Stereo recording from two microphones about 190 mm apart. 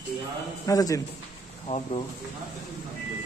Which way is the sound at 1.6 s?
30° left (ahead or behind).